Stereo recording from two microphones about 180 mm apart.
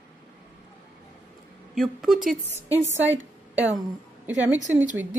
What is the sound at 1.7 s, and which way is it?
Speech, centre (ahead or behind).